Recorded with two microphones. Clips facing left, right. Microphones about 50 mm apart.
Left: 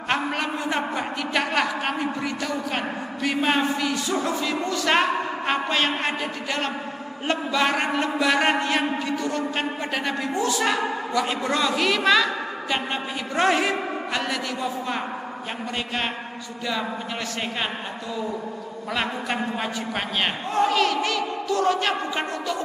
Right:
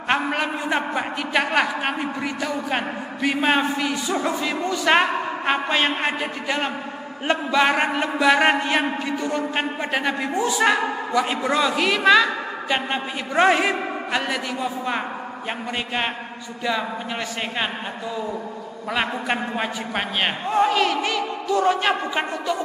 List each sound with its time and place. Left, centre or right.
0.1 s a man's voice: centre
19.2 s a man's voice: right